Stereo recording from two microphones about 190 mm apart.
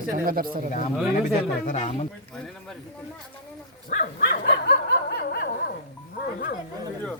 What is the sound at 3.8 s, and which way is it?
Bow-wow, 50° left (ahead or behind).